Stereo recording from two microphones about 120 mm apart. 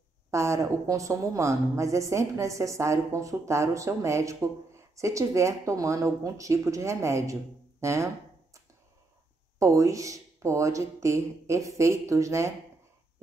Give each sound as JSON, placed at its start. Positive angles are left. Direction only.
{"t": 0.3, "sound": "a woman's voice", "side_deg": -25}
{"t": 9.6, "sound": "a woman's voice", "side_deg": -25}